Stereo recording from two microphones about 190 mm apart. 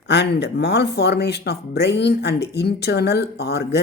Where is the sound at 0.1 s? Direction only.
65° left (ahead or behind).